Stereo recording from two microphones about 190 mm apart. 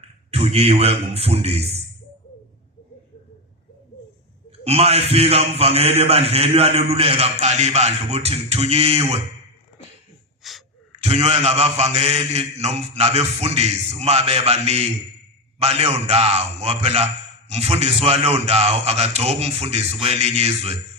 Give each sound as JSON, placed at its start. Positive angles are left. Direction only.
{"t": 0.3, "sound": "a man's voice", "side_deg": -35}
{"t": 4.6, "sound": "a man's voice", "side_deg": -35}
{"t": 10.4, "sound": "gasp", "side_deg": 0}
{"t": 10.9, "sound": "a man's voice", "side_deg": -35}